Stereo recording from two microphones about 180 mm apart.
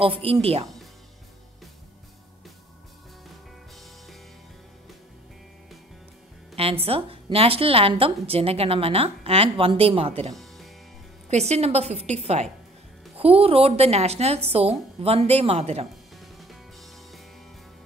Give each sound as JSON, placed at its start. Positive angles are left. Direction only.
{"t": 0.0, "sound": "a woman's voice", "side_deg": -30}
{"t": 6.5, "sound": "a woman's voice", "side_deg": -30}
{"t": 10.3, "sound": "music", "side_deg": 0}
{"t": 11.2, "sound": "a woman's voice", "side_deg": -35}